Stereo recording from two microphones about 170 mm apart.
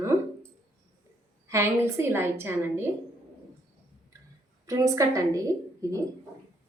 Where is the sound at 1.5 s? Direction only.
15° right (ahead or behind).